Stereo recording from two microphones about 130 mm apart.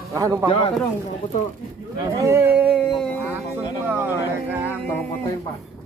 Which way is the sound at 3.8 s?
15° right (ahead or behind).